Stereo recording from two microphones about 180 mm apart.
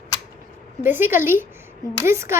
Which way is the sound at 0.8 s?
10° right (ahead or behind).